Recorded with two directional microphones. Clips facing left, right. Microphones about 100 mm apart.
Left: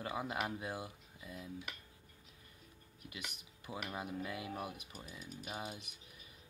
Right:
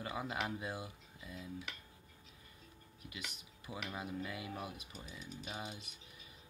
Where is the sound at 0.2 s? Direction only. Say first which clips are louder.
Even; 10° left (ahead or behind).